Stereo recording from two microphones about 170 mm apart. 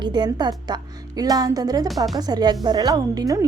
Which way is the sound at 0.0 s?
25° right (ahead or behind).